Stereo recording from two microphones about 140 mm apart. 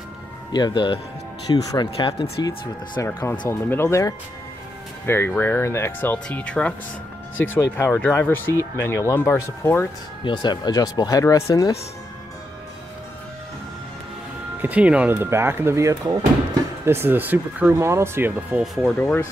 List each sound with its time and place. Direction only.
0.5 s speech: 30° left (ahead or behind)
3.1 s speech: 15° left (ahead or behind)
10.2 s speech: 35° left (ahead or behind)
14.6 s speech: 10° right (ahead or behind)
18.9 s speech: 10° left (ahead or behind)